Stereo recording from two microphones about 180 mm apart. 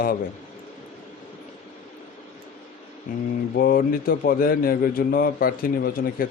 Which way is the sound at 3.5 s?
55° left (ahead or behind).